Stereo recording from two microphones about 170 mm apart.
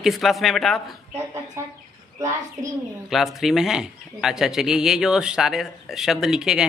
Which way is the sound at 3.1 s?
Centre (ahead or behind).